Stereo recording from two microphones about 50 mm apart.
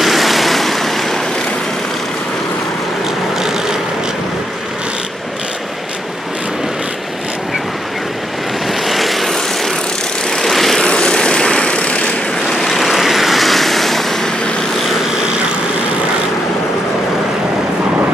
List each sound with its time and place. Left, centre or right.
0.0 s vehicle: centre
8.8 s vehicle: centre
10.8 s vehicle: centre
12.4 s vehicle: centre